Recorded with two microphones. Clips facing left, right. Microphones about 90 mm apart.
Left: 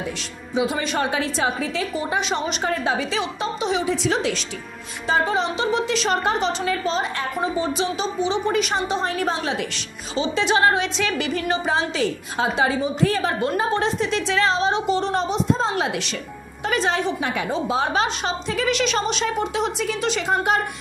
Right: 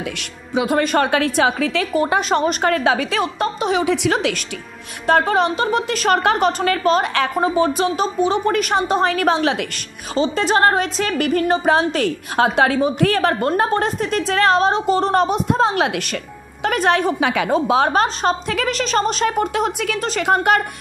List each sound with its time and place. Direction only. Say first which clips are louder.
0.6 s a woman's voice: right 5 dB; 55° right (ahead or behind)
2.1 s a woman's voice: right 6 dB; 45° right (ahead or behind); by 9.7 s 65° right (ahead or behind)
10.1 s speech: right 3 dB; 40° right (ahead or behind)
11.7 s a woman's voice: right 5 dB; 60° right (ahead or behind)
14.7 s speech: right 4 dB; 40° right (ahead or behind)
15.1 s a woman's voice: right 5 dB; 55° right (ahead or behind); by 17.5 s 90° right
17.5 s speech: right 6 dB; 60° right (ahead or behind)
20.0 s speech: right 2 dB; 40° right (ahead or behind)
20.2 s a woman's voice: right 6 dB; 65° right (ahead or behind)